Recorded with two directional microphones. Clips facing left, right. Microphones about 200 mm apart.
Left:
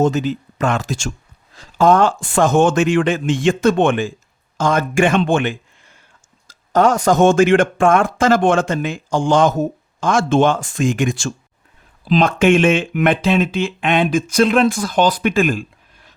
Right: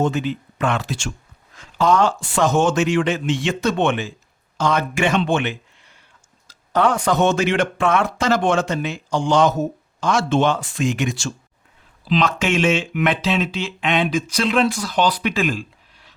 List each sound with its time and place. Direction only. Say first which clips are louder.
0.0 s speech: left 4 dB; 40° left (ahead or behind)